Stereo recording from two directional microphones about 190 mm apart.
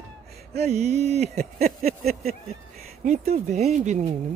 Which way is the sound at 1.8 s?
35° right (ahead or behind).